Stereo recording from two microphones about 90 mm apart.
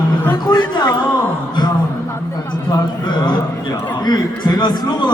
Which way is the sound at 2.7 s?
50° left (ahead or behind).